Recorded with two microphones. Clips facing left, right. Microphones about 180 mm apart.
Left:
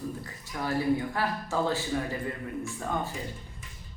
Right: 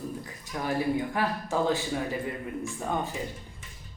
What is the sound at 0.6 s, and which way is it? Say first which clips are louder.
Speech: left 1 dB; 15° right (ahead or behind).